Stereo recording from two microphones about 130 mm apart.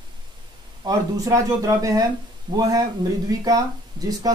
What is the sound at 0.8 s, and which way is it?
Speech, 25° right (ahead or behind).